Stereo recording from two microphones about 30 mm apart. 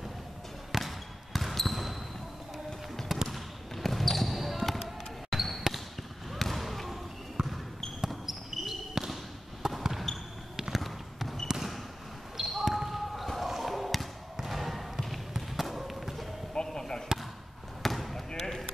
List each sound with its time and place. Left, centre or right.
0.7 s basketball bounce: centre
3.3 s basketball bounce: centre
7.4 s basketball bounce: centre
10.1 s basketball bounce: centre
10.7 s a sound: centre
11.4 s basketball bounce: centre
14.5 s trickle: centre
15.6 s a sound: centre
16.7 s basketball bounce: left
17.8 s basketball bounce: centre